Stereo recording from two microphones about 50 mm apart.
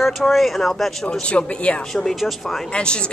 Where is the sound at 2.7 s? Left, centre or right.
Centre.